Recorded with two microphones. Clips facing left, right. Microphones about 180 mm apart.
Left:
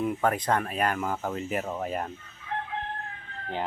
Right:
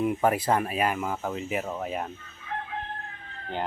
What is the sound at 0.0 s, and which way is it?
Speech, 5° right (ahead or behind).